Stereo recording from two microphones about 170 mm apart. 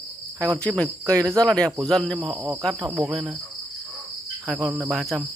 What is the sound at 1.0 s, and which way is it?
Cricket, 20° right (ahead or behind).